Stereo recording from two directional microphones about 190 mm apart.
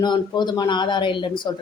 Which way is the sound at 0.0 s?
25° left (ahead or behind).